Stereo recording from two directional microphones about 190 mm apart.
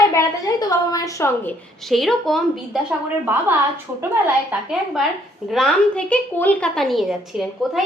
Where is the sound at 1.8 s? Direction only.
Centre (ahead or behind).